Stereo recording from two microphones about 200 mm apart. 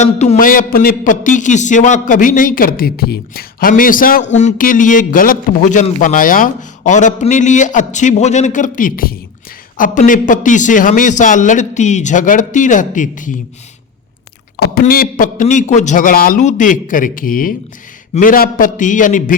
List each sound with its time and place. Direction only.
0.0 s a man's voice: 35° left (ahead or behind)
14.5 s a man's voice: 50° left (ahead or behind)